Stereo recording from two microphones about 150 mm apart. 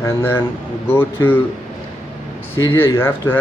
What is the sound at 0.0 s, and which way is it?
Speech, 15° left (ahead or behind).